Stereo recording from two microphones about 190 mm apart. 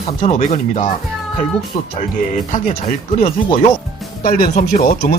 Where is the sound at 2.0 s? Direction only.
45° left (ahead or behind).